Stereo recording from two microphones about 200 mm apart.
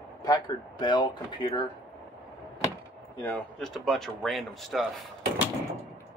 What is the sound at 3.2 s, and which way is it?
Speech, 10° left (ahead or behind).